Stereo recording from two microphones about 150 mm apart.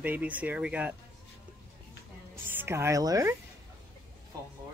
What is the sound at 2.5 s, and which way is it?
Speech, 15° right (ahead or behind).